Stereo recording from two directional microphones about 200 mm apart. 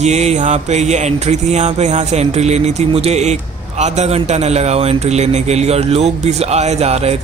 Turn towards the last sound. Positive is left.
turn(degrees=-30)  # may be behind; listen again after turning